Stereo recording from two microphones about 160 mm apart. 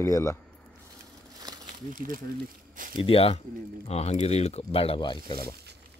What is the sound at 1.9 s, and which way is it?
Speech, 60° right (ahead or behind).